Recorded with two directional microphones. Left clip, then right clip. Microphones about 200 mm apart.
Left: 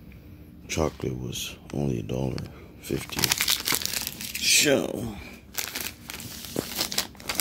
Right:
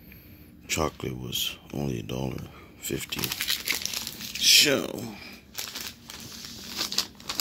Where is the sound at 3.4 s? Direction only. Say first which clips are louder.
Left 3 dB; 40° left (ahead or behind).